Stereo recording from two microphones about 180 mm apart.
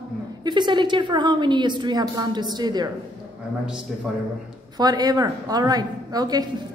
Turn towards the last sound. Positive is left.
turn(degrees=-20)  # may be behind; listen again after turning